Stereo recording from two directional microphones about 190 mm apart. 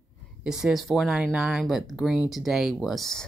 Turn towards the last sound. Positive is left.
turn(degrees=0)  # may be behind; listen again after turning